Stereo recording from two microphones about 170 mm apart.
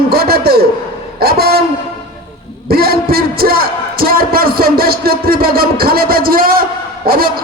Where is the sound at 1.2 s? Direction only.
65° right (ahead or behind).